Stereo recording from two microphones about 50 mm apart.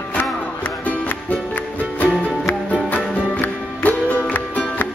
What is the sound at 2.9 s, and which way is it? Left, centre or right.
Music, left.